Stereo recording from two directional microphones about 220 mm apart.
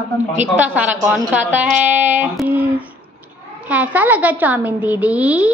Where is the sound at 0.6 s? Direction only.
5° right (ahead or behind).